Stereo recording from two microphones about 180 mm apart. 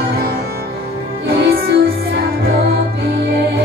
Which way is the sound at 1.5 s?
55° right (ahead or behind).